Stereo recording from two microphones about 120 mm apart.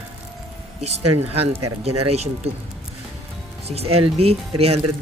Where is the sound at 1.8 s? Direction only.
60° right (ahead or behind).